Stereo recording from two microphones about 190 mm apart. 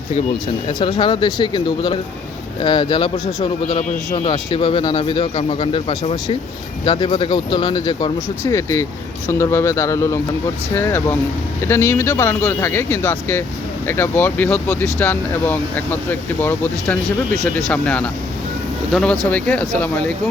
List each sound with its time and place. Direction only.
0.8 s speech: 25° left (ahead or behind); by 18.1 s 5° left (ahead or behind)
19.3 s speech: 5° left (ahead or behind)